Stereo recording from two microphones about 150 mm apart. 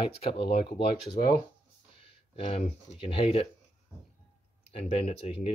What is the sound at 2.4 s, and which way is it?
Speech, 45° left (ahead or behind).